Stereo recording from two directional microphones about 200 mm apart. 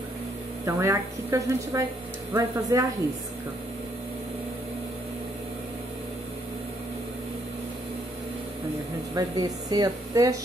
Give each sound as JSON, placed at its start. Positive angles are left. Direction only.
{"t": 0.7, "sound": "speech", "side_deg": -15}
{"t": 9.1, "sound": "speech", "side_deg": -20}